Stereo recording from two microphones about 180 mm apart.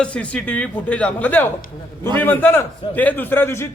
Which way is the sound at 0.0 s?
5° left (ahead or behind).